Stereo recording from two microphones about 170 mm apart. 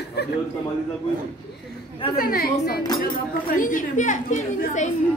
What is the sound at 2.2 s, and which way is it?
A woman's voice, 60° left (ahead or behind).